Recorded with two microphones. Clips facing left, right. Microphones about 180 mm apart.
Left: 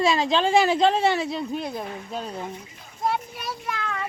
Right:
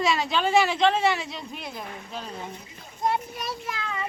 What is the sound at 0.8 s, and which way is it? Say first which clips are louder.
Speech: left 2 dB; 35° left (ahead or behind).